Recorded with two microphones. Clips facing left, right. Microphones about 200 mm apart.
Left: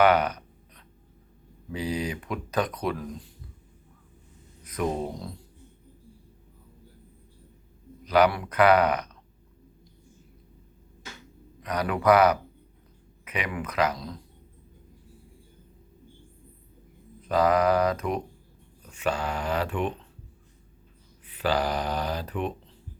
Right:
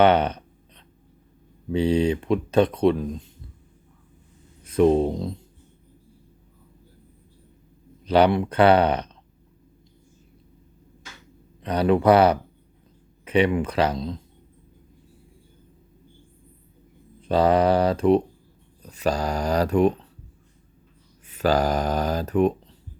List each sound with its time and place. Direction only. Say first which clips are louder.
0.0 s a sound: right 3 dB; 30° right (ahead or behind)
1.7 s speech: right 10 dB; 30° right (ahead or behind)
4.6 s speech: right 11 dB; 30° right (ahead or behind)
8.0 s speech: right 4 dB; 30° right (ahead or behind)
11.6 s speech: right 6 dB; 30° right (ahead or behind)
17.2 s speech: right 4 dB; 30° right (ahead or behind)
21.2 s speech: right 5 dB; 45° right (ahead or behind)